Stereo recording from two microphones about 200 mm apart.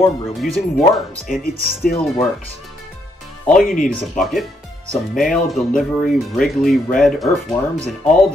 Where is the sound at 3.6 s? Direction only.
40° left (ahead or behind).